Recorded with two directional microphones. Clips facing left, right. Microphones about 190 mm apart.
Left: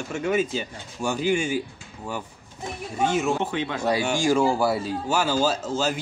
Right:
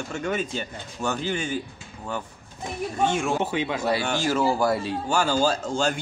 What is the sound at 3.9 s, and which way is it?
A man's voice, 10° left (ahead or behind).